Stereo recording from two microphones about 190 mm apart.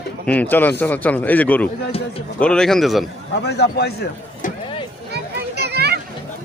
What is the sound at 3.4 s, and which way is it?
A man's voice, 60° left (ahead or behind).